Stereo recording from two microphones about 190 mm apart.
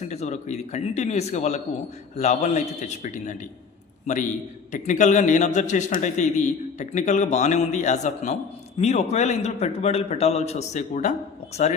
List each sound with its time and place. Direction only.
0.0 s a man's voice: 35° left (ahead or behind)